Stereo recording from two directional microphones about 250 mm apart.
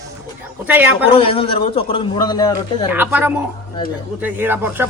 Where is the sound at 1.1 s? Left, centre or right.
Left.